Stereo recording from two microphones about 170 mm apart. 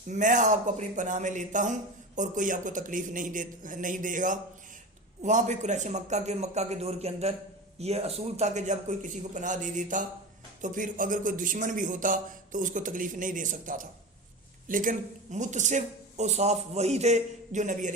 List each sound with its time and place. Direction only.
0.1 s a man's voice: 45° right (ahead or behind)